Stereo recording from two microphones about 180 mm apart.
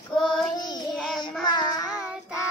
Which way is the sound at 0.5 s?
25° left (ahead or behind).